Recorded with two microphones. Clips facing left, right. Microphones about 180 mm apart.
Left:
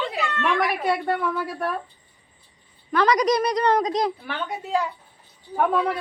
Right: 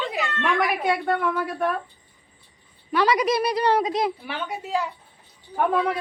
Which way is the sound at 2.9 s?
5° right (ahead or behind).